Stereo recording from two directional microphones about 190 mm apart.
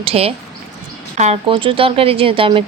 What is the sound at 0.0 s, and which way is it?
Speech, 30° right (ahead or behind).